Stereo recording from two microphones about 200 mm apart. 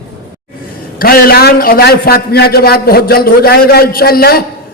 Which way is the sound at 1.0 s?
50° left (ahead or behind).